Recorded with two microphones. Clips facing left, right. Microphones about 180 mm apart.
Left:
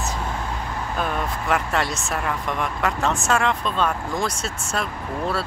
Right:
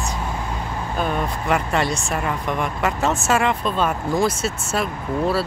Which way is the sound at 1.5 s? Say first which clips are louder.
Right 3 dB; centre (ahead or behind).